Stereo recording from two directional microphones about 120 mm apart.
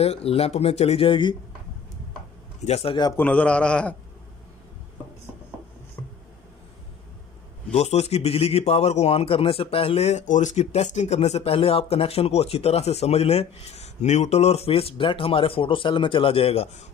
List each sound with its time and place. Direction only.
0.0 s a man's voice: 55° left (ahead or behind)
2.8 s a man's voice: 45° left (ahead or behind)
3.2 s a man's voice: 10° left (ahead or behind)
6.0 s a sound: 25° left (ahead or behind)
7.7 s a man's voice: 65° left (ahead or behind)